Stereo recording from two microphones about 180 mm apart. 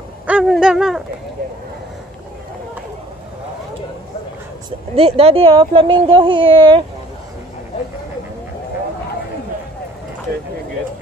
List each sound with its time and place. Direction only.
0.3 s speech: 5° right (ahead or behind)
4.6 s speech: 30° right (ahead or behind)